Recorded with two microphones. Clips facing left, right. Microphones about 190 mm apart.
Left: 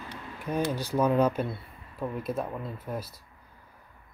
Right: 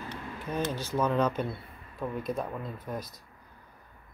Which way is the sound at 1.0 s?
10° left (ahead or behind).